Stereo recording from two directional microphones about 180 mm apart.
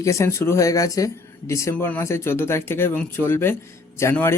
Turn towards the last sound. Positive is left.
turn(degrees=15)  # may be behind; listen again after turning